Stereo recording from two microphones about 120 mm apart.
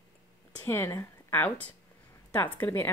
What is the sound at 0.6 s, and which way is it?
A woman's voice, 20° left (ahead or behind).